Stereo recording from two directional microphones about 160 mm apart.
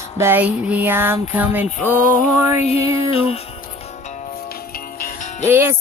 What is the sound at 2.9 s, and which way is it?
Music, 35° left (ahead or behind).